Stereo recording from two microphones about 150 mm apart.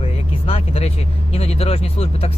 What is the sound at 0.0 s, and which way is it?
Speech, 40° left (ahead or behind).